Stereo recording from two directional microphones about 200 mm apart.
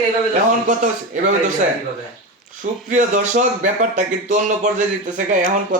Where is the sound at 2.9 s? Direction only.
40° right (ahead or behind).